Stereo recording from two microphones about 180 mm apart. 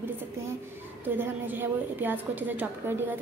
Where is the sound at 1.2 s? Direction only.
10° right (ahead or behind).